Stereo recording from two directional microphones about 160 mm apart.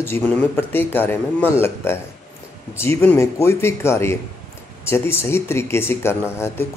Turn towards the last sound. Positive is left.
turn(degrees=15)  # may be behind; listen again after turning